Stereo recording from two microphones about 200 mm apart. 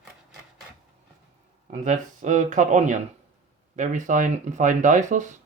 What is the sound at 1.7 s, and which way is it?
Speech, 40° right (ahead or behind).